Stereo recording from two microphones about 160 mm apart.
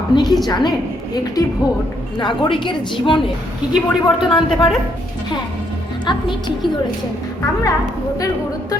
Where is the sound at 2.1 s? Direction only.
30° left (ahead or behind).